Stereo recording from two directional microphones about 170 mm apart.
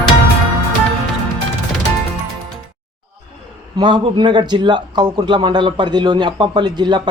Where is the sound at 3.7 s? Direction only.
25° right (ahead or behind).